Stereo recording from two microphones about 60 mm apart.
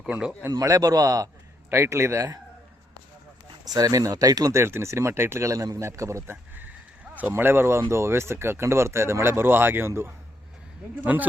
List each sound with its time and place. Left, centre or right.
0.0 s speech: centre
0.6 s a man's voice: right
1.7 s speech: right
3.8 s speech: right
4.5 s speech: right
5.8 s a man's voice: right
6.2 s speech: right
11.0 s speech: right